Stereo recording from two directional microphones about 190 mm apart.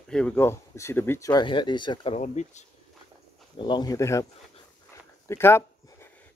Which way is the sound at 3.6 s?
25° left (ahead or behind).